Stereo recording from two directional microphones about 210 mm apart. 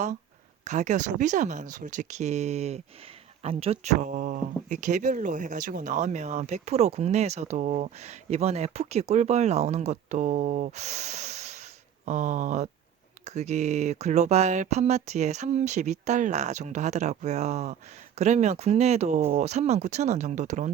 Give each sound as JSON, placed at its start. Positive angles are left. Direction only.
{"t": 0.6, "sound": "speech", "side_deg": -35}